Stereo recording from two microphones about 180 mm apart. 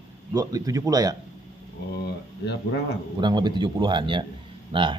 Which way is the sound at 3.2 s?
25° right (ahead or behind).